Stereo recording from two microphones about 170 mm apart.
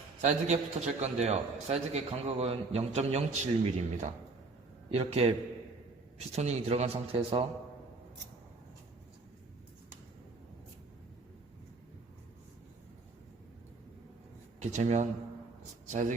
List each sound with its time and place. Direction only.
0.2 s a man's voice: 40° right (ahead or behind)
14.6 s a man's voice: 45° right (ahead or behind)